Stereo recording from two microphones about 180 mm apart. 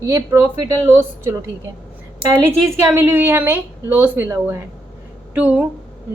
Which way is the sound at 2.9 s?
10° right (ahead or behind).